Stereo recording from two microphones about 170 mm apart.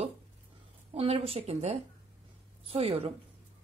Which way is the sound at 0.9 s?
35° right (ahead or behind).